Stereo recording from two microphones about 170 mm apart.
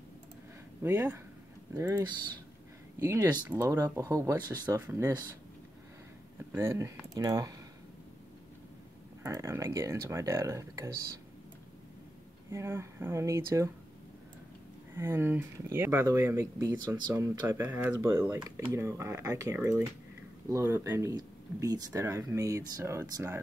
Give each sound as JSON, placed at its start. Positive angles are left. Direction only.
{"t": 0.8, "sound": "speech", "side_deg": -15}
{"t": 6.5, "sound": "speech", "side_deg": -15}
{"t": 9.2, "sound": "speech", "side_deg": -15}
{"t": 12.4, "sound": "speech", "side_deg": -15}
{"t": 15.0, "sound": "speech", "side_deg": -15}